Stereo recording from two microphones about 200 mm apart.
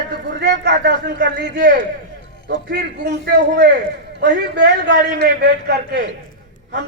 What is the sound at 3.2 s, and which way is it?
A man's voice, 55° right (ahead or behind).